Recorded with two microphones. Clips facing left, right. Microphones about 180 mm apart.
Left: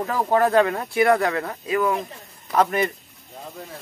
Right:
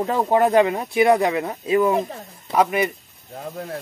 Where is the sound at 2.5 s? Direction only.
10° right (ahead or behind).